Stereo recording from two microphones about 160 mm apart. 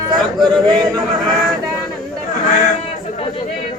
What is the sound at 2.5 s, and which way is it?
Speech, 55° left (ahead or behind).